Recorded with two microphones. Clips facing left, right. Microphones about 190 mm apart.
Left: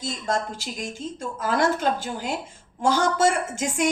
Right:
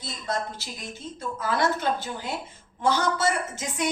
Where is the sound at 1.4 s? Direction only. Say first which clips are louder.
Left 3 dB; 45° left (ahead or behind).